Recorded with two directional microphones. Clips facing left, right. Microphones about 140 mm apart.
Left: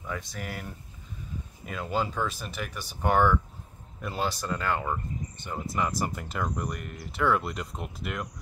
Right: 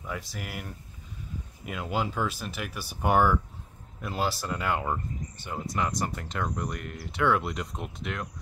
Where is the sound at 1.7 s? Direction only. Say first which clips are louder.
Left 1 dB; 5° right (ahead or behind).